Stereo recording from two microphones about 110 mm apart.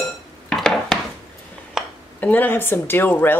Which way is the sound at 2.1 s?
15° left (ahead or behind).